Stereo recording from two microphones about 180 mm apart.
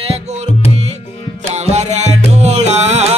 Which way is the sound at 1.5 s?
40° right (ahead or behind).